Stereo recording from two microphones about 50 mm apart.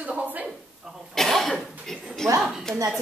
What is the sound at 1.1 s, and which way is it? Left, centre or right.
Speech, centre.